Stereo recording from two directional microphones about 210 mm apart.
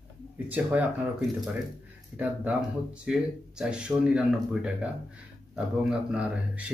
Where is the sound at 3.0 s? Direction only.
5° right (ahead or behind).